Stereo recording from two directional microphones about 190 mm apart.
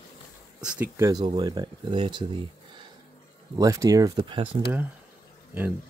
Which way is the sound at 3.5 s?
15° right (ahead or behind).